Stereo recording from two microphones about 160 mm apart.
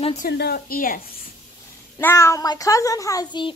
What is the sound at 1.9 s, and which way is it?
A child's voice, 15° left (ahead or behind).